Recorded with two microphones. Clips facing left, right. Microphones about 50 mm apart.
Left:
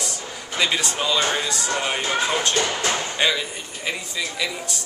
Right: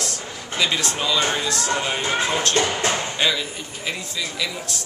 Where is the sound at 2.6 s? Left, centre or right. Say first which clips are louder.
Right 1 dB; centre.